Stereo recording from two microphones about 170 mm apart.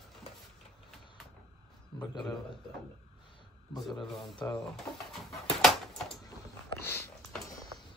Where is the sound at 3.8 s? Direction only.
Centre (ahead or behind).